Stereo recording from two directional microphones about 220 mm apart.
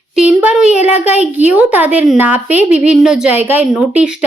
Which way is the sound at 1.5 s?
5° right (ahead or behind).